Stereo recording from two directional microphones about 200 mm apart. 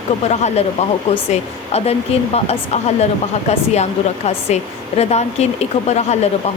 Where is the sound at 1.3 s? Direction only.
30° left (ahead or behind).